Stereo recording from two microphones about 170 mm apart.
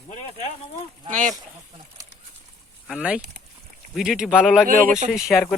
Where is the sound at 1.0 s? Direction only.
45° right (ahead or behind).